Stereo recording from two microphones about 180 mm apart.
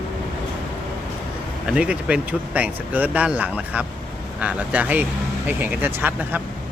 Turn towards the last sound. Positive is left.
turn(degrees=-10)  # may be behind; listen again after turning